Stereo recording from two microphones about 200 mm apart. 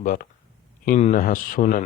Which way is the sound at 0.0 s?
40° left (ahead or behind).